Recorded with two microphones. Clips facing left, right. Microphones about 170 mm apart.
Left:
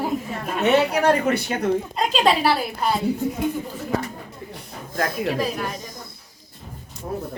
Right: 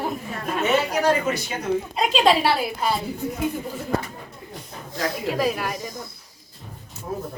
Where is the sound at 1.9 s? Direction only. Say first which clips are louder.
Right 4 dB; centre (ahead or behind).